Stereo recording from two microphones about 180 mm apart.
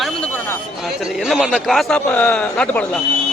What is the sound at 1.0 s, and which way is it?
A man's voice, centre (ahead or behind).